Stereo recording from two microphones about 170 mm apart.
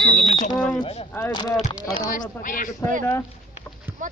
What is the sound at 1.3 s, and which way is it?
Speech, 25° left (ahead or behind).